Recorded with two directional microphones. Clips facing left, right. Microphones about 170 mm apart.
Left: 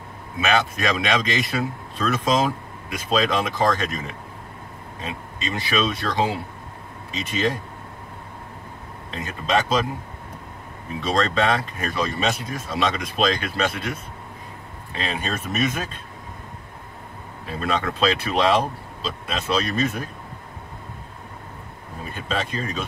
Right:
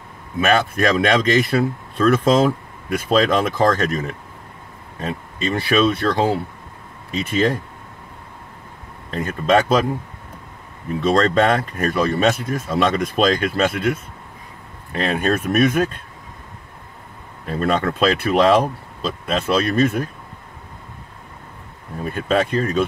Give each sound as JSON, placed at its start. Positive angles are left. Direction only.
{"t": 0.4, "sound": "speech", "side_deg": -50}
{"t": 9.1, "sound": "speech", "side_deg": -50}
{"t": 11.0, "sound": "speech", "side_deg": -50}
{"t": 17.5, "sound": "speech", "side_deg": -50}
{"t": 22.3, "sound": "speech", "side_deg": -55}